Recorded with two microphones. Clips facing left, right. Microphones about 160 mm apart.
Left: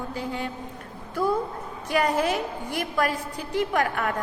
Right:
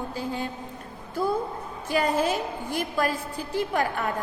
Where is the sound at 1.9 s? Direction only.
25° right (ahead or behind).